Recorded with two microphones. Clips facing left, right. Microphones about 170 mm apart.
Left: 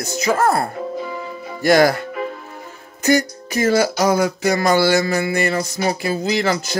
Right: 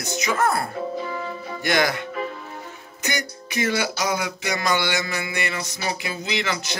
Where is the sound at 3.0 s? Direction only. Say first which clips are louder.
Left 12 dB; 40° left (ahead or behind).